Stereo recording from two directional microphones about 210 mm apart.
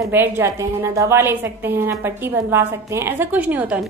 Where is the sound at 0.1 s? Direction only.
10° right (ahead or behind).